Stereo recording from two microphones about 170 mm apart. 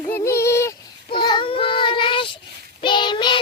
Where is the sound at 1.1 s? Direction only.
30° left (ahead or behind).